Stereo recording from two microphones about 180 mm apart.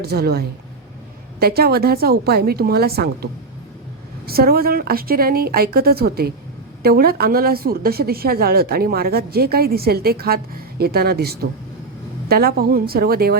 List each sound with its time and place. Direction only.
0.0 s a woman's voice: 60° right (ahead or behind)
4.3 s a woman's voice: 55° right (ahead or behind)